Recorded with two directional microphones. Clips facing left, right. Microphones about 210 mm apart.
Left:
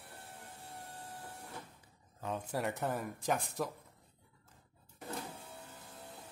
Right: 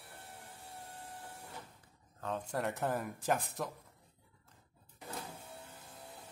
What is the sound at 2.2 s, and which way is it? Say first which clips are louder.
Speech: even; 10° left (ahead or behind).